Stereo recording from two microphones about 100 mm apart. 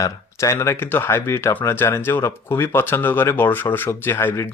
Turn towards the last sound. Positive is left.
turn(degrees=25)  # may be behind; listen again after turning